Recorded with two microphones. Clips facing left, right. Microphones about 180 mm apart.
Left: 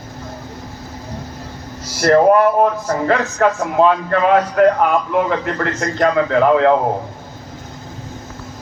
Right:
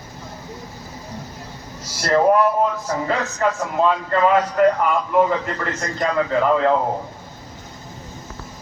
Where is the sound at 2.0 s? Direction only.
60° left (ahead or behind).